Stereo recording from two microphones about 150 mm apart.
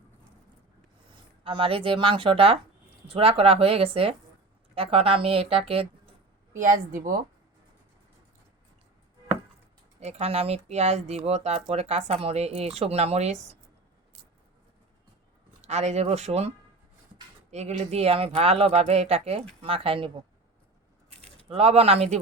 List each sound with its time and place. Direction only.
1.5 s speech: 35° right (ahead or behind)
6.5 s a woman's voice: 60° right (ahead or behind)
10.0 s speech: 45° right (ahead or behind)
15.6 s speech: 50° right (ahead or behind)
17.5 s speech: 45° right (ahead or behind)
21.3 s speech: 40° right (ahead or behind)